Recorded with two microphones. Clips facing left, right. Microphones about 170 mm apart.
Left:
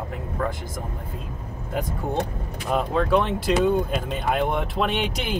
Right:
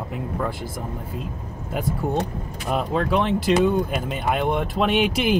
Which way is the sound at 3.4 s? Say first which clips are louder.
Right 2 dB; 5° right (ahead or behind).